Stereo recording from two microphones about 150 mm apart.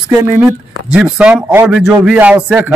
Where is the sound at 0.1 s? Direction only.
10° right (ahead or behind).